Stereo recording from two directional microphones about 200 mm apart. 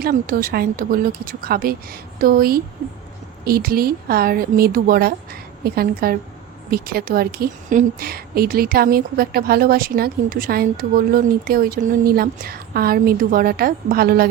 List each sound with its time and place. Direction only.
0.0 s a woman's voice: 45° right (ahead or behind)